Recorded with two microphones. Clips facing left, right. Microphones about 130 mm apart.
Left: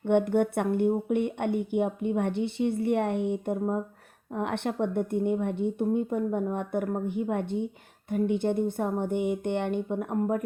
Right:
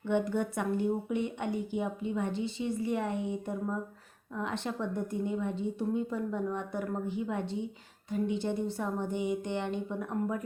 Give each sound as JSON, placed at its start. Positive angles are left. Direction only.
{"t": 0.0, "sound": "speech", "side_deg": 60}